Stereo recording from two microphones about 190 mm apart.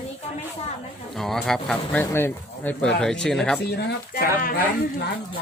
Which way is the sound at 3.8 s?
55° left (ahead or behind).